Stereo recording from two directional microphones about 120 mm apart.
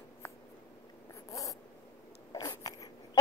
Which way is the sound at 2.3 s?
30° left (ahead or behind).